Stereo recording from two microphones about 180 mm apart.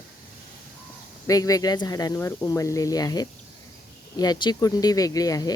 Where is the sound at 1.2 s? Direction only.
20° left (ahead or behind).